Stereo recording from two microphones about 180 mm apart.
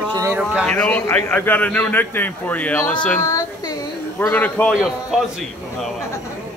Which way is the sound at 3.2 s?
20° left (ahead or behind).